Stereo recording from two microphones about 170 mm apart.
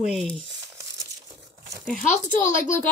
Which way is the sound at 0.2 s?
5° left (ahead or behind).